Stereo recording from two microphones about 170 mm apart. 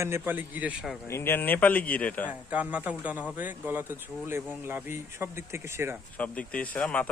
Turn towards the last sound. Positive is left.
turn(degrees=10)  # may be behind; listen again after turning